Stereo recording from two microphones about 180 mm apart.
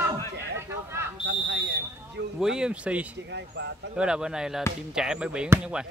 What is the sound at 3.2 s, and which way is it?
Speech, 70° right (ahead or behind).